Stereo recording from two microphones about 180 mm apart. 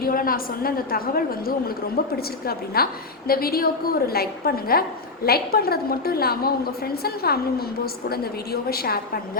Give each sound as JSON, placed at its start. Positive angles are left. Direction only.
{"t": 0.0, "sound": "a woman's voice", "side_deg": 55}
{"t": 8.7, "sound": "a woman's voice", "side_deg": 60}